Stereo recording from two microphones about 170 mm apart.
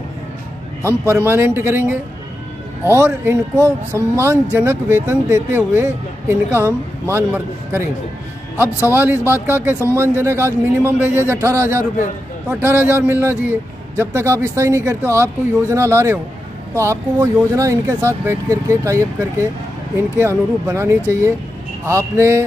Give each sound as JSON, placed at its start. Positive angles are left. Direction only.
{"t": 0.8, "sound": "speech", "side_deg": -15}